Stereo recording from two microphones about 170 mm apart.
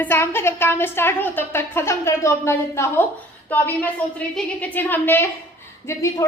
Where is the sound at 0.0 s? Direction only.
15° left (ahead or behind).